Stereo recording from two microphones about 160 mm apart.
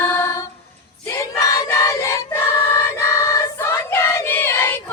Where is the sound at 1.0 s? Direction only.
20° left (ahead or behind).